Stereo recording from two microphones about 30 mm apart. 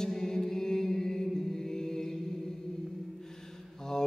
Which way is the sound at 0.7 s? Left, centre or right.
Centre.